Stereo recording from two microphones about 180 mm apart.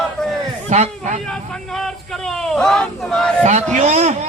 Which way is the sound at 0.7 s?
40° right (ahead or behind).